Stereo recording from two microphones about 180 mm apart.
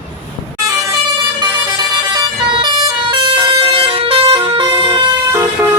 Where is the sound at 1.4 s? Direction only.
25° right (ahead or behind).